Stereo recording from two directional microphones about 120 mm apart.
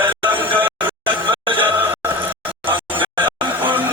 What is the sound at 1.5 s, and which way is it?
Music, 15° right (ahead or behind).